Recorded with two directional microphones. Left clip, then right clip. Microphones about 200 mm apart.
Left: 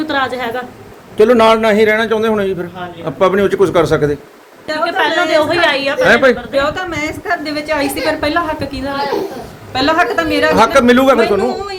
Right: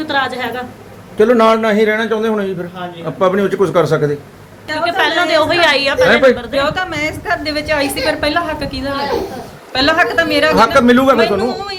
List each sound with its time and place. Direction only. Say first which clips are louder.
0.0 s a woman's voice: even; 45° left (ahead or behind)
1.2 s a woman's voice: left 2 dB; 15° left (ahead or behind)
4.8 s a sound: even; 10° left (ahead or behind)
5.5 s a woman's voice: right 1 dB; 20° right (ahead or behind)
6.1 s a woman's voice: left 3 dB; 25° left (ahead or behind)